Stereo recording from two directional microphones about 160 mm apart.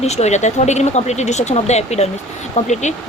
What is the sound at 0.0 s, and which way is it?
Speech, 45° left (ahead or behind).